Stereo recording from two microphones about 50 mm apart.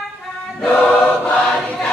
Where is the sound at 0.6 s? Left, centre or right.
Left.